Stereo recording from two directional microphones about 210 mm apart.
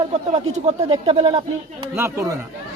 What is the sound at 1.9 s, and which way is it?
Speech, 10° right (ahead or behind).